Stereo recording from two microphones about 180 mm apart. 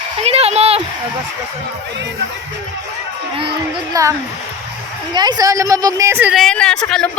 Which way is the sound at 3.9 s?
15° right (ahead or behind).